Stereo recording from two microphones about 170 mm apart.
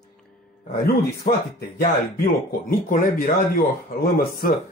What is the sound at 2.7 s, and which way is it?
A man's voice, 55° left (ahead or behind).